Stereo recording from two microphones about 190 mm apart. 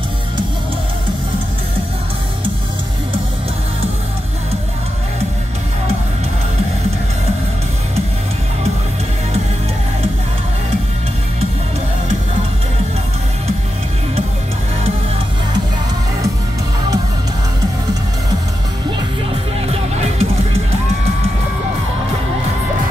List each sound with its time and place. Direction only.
19.7 s music: 35° right (ahead or behind)